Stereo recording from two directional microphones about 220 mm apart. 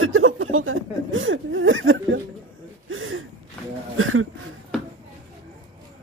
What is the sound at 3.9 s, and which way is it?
Speech, 70° right (ahead or behind).